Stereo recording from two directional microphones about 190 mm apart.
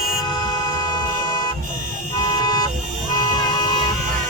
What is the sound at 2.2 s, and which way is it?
Vehicle, 20° left (ahead or behind).